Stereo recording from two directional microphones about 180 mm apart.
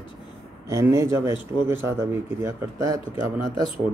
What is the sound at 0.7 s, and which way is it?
Speech, 15° right (ahead or behind).